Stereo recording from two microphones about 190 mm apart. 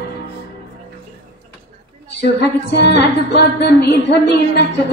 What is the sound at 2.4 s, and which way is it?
A woman's voice, 60° left (ahead or behind).